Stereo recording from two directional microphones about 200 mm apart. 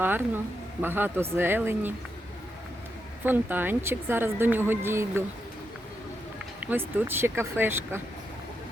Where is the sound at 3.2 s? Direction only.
10° right (ahead or behind).